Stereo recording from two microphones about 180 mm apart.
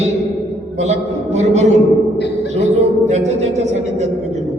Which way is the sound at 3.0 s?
40° right (ahead or behind).